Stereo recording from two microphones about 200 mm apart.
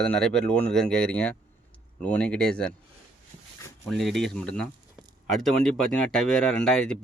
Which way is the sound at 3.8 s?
Centre (ahead or behind).